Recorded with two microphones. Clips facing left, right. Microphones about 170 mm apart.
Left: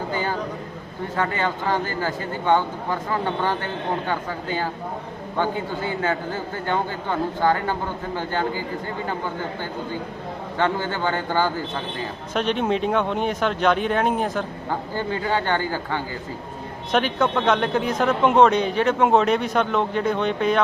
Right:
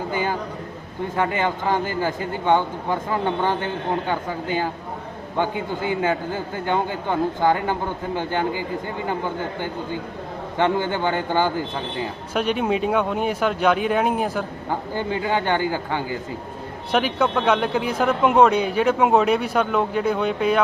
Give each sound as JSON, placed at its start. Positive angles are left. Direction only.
{"t": 0.1, "sound": "a sound", "side_deg": -15}
{"t": 1.1, "sound": "speech", "side_deg": -15}
{"t": 10.6, "sound": "speech", "side_deg": -15}